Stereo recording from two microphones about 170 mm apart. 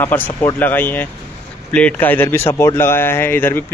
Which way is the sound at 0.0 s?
10° left (ahead or behind).